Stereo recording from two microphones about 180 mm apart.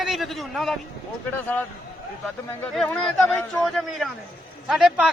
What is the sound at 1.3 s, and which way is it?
Speech, 10° left (ahead or behind).